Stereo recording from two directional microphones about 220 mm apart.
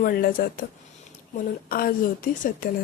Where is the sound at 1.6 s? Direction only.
40° left (ahead or behind).